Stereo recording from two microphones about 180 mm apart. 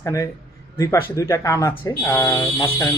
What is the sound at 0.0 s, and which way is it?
Speech, 15° left (ahead or behind).